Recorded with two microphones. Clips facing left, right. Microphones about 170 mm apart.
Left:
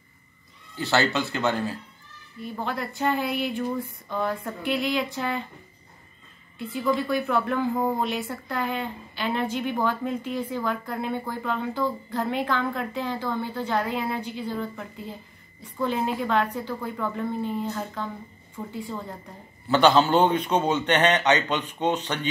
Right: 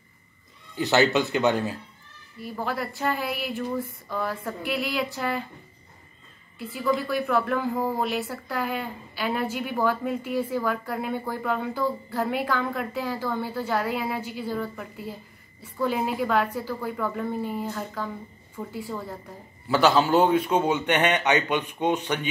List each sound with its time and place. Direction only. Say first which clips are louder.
0.7 s a woman's voice: right 3 dB; 15° right (ahead or behind)
2.4 s speech: right 1 dB; 5° right (ahead or behind)
6.7 s a woman's voice: left 1 dB; 5° right (ahead or behind)